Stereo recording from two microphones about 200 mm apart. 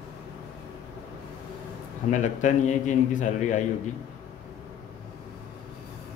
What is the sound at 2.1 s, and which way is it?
A man's voice, 40° left (ahead or behind).